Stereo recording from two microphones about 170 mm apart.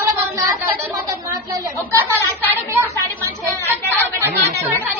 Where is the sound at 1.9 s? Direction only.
15° right (ahead or behind).